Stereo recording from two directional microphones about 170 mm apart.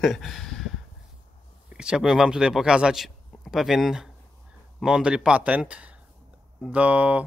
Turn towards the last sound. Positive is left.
turn(degrees=-10)  # may be behind; listen again after turning